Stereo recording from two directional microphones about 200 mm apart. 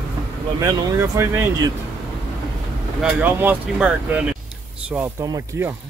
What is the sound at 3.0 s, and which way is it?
Speech, 10° right (ahead or behind).